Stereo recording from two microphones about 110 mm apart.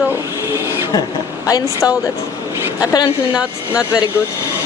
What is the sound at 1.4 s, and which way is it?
Speech, 35° left (ahead or behind).